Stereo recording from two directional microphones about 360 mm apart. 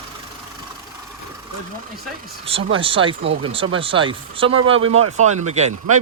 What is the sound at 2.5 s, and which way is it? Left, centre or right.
Speech, centre.